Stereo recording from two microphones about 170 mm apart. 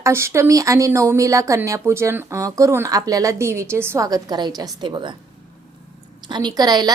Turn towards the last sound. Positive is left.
turn(degrees=-25)  # may be behind; listen again after turning